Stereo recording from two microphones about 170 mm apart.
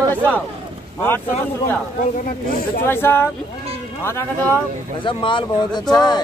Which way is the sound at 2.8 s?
15° left (ahead or behind).